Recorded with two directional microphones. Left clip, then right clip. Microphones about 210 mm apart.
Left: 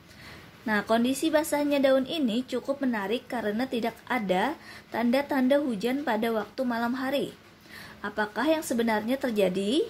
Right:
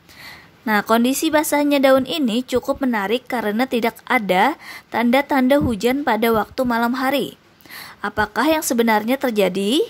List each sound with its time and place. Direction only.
0.7 s a woman's voice: 30° right (ahead or behind)